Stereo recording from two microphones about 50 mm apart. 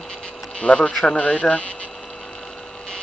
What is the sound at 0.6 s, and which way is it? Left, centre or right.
Speech, left.